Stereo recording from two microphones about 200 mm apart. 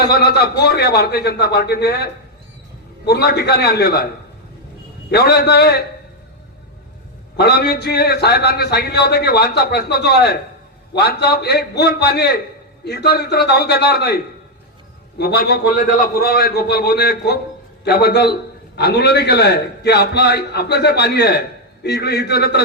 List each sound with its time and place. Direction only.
0.0 s a man's voice: 50° left (ahead or behind)
3.1 s a man's voice: 55° left (ahead or behind)
5.1 s a man's voice: 55° left (ahead or behind)
7.3 s a man's voice: 55° left (ahead or behind)
15.2 s a man's voice: 50° left (ahead or behind)